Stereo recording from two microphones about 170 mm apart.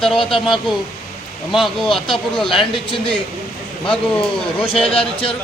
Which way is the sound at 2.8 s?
30° left (ahead or behind).